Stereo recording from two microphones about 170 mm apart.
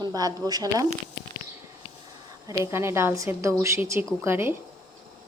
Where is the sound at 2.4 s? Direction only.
15° right (ahead or behind).